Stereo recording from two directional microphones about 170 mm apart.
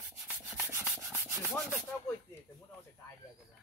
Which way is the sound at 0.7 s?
15° right (ahead or behind).